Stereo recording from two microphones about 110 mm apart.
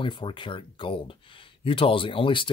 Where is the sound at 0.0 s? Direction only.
50° left (ahead or behind).